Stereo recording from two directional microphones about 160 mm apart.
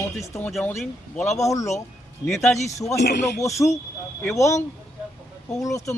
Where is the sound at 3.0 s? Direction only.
90° left.